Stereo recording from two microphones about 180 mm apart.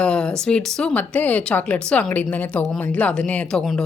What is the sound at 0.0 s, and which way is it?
A woman's voice, 5° left (ahead or behind).